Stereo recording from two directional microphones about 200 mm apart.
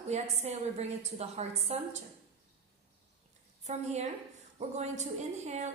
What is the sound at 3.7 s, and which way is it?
Speech, 35° right (ahead or behind).